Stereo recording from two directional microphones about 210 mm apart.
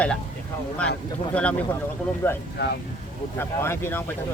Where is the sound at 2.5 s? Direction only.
50° left (ahead or behind).